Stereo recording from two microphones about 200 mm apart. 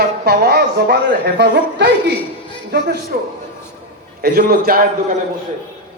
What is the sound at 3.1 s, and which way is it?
A man's voice, 50° right (ahead or behind).